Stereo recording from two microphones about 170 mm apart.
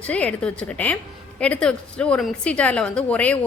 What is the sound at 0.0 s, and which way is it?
A woman's voice, 10° left (ahead or behind).